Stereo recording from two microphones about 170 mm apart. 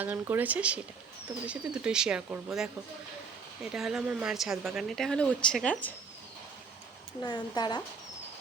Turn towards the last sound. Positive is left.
turn(degrees=25)  # may be behind; listen again after turning